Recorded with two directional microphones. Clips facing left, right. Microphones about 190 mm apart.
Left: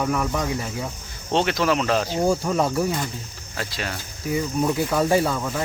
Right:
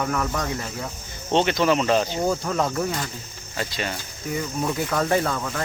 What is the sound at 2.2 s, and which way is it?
Speech, 10° left (ahead or behind).